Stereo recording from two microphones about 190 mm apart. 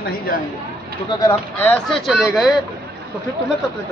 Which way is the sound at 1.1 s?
20° left (ahead or behind).